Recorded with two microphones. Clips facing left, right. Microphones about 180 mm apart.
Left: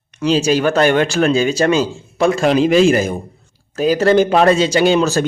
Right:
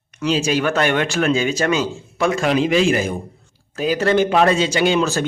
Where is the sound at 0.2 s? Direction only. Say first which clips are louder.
Left 4 dB; 35° left (ahead or behind).